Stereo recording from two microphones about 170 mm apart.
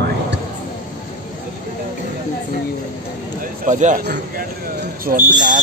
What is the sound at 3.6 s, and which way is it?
Speech, 45° right (ahead or behind).